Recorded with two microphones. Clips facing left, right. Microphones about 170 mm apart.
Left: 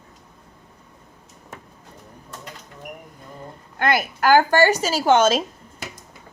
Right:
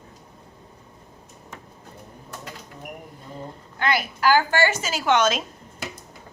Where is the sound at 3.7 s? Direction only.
50° left (ahead or behind); by 5.4 s 30° left (ahead or behind).